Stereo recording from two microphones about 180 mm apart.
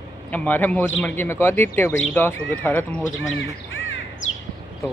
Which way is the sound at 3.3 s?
90° left.